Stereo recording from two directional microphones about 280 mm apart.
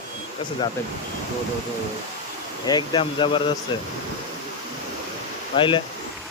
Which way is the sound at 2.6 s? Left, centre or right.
Centre.